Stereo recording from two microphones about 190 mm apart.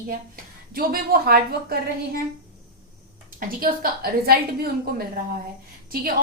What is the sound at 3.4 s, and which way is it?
A woman's voice, 50° right (ahead or behind).